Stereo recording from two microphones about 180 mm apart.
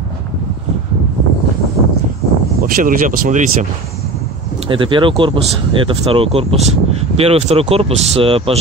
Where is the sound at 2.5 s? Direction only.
50° right (ahead or behind).